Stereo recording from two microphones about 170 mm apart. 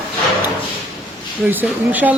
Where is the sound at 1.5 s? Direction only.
10° right (ahead or behind).